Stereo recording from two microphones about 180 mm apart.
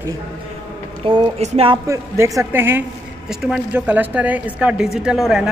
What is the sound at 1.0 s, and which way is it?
Speech, 30° right (ahead or behind).